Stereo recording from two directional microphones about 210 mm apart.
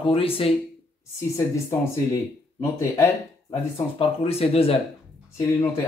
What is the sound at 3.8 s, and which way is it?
Speech, 30° left (ahead or behind).